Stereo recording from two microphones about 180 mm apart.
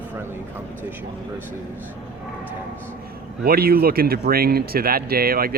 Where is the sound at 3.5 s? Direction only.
55° right (ahead or behind).